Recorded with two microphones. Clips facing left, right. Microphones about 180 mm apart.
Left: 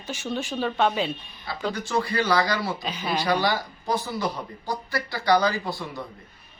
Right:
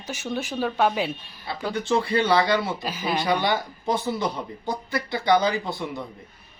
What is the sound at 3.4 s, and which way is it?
Speech, 20° right (ahead or behind).